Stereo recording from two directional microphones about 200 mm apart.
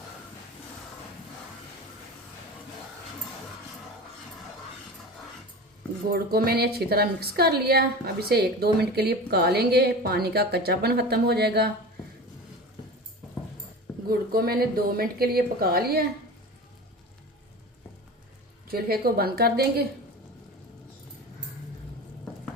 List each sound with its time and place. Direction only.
6.1 s a woman's voice: 50° right (ahead or behind)
14.1 s a woman's voice: 50° right (ahead or behind)
18.7 s a woman's voice: 50° right (ahead or behind)